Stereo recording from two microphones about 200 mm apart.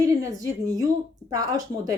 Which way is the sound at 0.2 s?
15° right (ahead or behind).